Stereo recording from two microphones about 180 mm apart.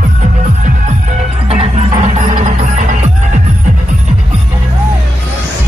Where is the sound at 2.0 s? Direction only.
40° right (ahead or behind).